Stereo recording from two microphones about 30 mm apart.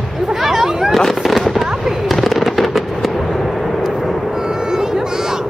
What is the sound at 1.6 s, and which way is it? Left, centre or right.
Fireworks, centre.